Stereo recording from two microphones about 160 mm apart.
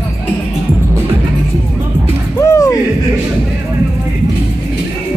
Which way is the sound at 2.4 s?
20° left (ahead or behind).